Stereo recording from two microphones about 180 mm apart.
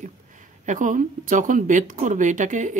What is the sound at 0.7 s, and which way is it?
Speech, 45° right (ahead or behind).